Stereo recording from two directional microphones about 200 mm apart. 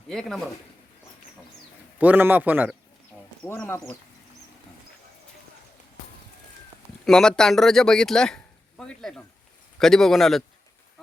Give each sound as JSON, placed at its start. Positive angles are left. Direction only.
{"t": 0.1, "sound": "speech", "side_deg": 5}
{"t": 2.0, "sound": "a man's voice", "side_deg": -10}
{"t": 3.4, "sound": "speech", "side_deg": 10}
{"t": 7.0, "sound": "speech", "side_deg": 5}